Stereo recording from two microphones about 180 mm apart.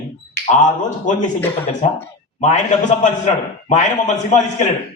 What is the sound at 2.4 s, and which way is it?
A man's voice, 40° left (ahead or behind).